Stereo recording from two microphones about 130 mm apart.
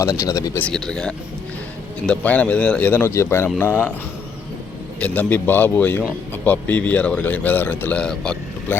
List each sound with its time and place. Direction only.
0.1 s speech: 25° left (ahead or behind)
0.6 s a man's voice: 5° left (ahead or behind)
4.9 s a man's voice: 10° left (ahead or behind)